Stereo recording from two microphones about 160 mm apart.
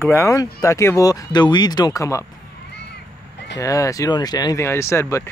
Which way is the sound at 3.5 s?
20° left (ahead or behind).